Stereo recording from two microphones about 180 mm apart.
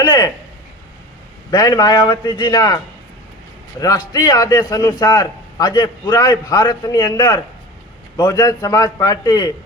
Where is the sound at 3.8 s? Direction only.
20° left (ahead or behind).